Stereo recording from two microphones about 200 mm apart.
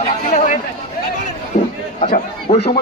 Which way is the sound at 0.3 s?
35° left (ahead or behind).